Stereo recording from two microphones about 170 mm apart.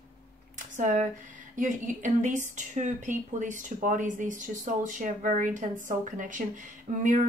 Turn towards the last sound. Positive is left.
turn(degrees=-40)  # may be behind; listen again after turning